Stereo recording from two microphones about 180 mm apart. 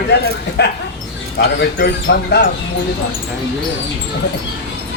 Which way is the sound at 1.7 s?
60° left (ahead or behind).